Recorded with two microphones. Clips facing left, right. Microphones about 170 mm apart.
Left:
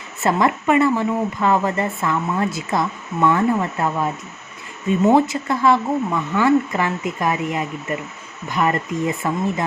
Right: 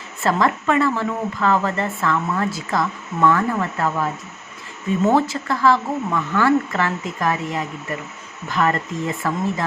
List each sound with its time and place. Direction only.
0.2 s speech: 20° left (ahead or behind)